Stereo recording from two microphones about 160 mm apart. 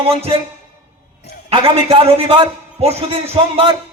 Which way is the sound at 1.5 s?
35° right (ahead or behind).